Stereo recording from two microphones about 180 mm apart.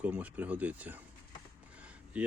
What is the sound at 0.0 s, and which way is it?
Speech, 10° right (ahead or behind).